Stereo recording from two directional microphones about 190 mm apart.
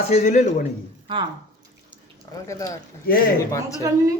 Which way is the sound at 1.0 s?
25° right (ahead or behind).